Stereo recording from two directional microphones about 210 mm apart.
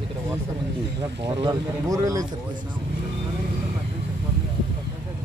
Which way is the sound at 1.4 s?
15° right (ahead or behind).